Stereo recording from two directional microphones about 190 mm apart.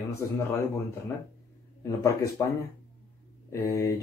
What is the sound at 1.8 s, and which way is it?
Speech, 15° left (ahead or behind).